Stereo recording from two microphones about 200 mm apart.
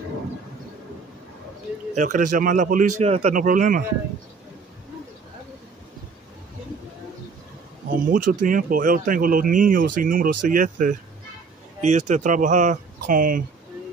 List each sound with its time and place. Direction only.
2.0 s speech: 40° right (ahead or behind)
7.9 s speech: 45° right (ahead or behind)